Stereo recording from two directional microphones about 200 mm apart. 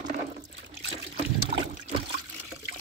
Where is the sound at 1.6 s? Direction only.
25° right (ahead or behind).